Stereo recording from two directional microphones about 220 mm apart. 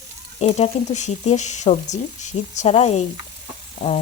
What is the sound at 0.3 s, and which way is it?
Speech, 30° left (ahead or behind).